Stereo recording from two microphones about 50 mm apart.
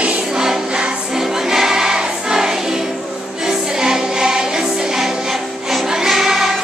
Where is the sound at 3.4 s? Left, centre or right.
Centre.